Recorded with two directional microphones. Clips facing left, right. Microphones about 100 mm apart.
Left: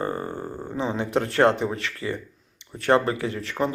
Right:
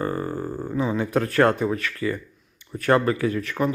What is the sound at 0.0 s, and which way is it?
Speech, 25° left (ahead or behind).